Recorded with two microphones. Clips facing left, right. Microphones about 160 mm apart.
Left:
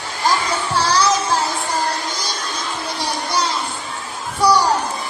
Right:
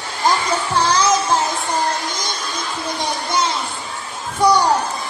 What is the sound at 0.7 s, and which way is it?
Music, 20° right (ahead or behind).